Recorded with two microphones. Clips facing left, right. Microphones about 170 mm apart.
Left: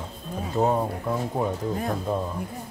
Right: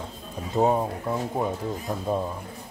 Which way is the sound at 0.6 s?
10° right (ahead or behind).